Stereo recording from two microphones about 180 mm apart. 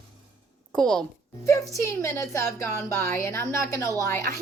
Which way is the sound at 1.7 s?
15° left (ahead or behind).